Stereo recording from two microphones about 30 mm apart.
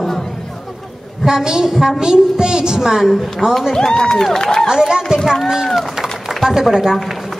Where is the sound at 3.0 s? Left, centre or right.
Centre.